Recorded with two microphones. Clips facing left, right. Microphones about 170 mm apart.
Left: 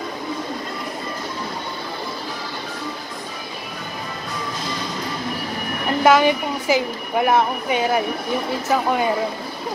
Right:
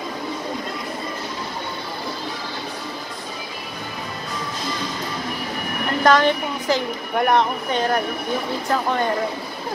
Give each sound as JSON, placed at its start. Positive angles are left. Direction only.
{"t": 6.0, "sound": "a woman's voice", "side_deg": 10}